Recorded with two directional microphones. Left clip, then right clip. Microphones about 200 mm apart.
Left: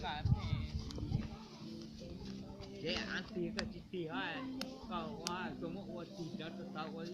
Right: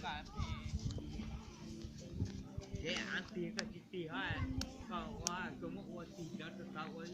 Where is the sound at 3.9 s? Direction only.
50° left (ahead or behind).